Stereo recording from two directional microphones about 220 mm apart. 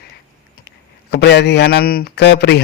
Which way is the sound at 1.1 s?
50° left (ahead or behind).